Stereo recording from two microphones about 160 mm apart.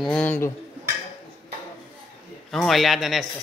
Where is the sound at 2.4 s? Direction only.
Centre (ahead or behind).